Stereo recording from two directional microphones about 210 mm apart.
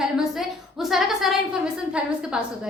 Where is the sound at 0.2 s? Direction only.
Centre (ahead or behind).